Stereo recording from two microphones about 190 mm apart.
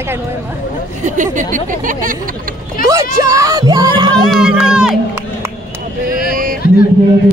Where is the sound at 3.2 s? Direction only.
15° right (ahead or behind).